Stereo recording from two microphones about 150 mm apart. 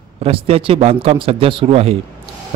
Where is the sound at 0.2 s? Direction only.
40° right (ahead or behind).